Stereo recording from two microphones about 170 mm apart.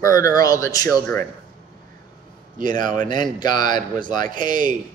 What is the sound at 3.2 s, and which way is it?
Speech, 25° left (ahead or behind).